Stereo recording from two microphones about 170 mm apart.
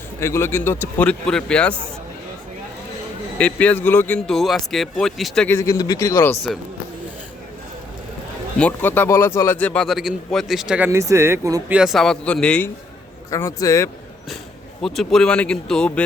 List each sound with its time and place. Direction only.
0.2 s speech: 15° left (ahead or behind)
3.3 s a man's voice: 10° left (ahead or behind)
5.5 s speech: 20° left (ahead or behind)
8.5 s a man's voice: 10° left (ahead or behind); by 11.6 s 20° right (ahead or behind)
11.7 s speech: 5° right (ahead or behind)
13.3 s speech: 20° left (ahead or behind)
14.8 s a man's voice: centre (ahead or behind)